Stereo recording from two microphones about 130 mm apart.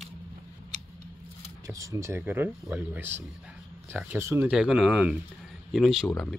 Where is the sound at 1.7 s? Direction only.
25° right (ahead or behind).